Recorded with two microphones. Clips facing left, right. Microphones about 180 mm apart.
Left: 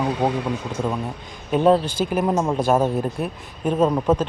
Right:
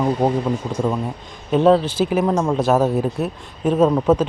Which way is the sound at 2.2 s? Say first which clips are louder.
Right 2 dB; 10° left (ahead or behind).